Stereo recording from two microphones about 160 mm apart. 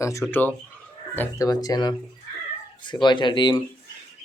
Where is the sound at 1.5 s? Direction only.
25° left (ahead or behind).